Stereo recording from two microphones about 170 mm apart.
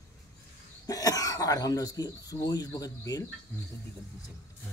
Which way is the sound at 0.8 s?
20° left (ahead or behind).